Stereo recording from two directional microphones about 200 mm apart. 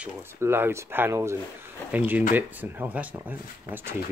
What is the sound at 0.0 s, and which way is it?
Speech, 10° right (ahead or behind).